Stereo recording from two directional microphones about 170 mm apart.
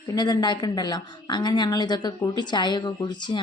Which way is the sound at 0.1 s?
25° left (ahead or behind).